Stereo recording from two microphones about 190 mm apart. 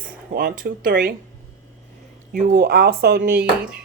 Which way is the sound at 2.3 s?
50° right (ahead or behind).